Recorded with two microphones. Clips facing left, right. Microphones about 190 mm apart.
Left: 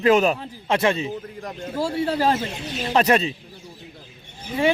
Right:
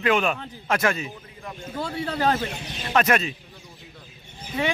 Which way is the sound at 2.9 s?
30° left (ahead or behind).